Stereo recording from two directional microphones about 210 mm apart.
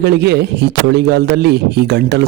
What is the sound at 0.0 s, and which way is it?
A man's voice, 50° right (ahead or behind).